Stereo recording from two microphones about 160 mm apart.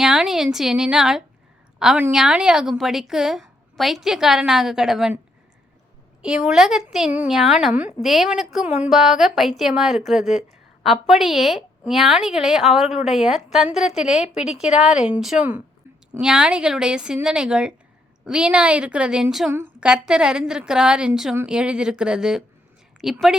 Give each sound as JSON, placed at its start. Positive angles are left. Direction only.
{"t": 0.0, "sound": "a woman's voice", "side_deg": -5}
{"t": 6.2, "sound": "a woman's voice", "side_deg": -5}
{"t": 14.2, "sound": "speech", "side_deg": 45}
{"t": 14.8, "sound": "a woman's voice", "side_deg": -5}